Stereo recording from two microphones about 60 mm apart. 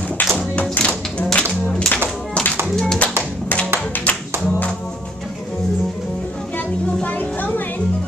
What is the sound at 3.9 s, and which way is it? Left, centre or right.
Music, left.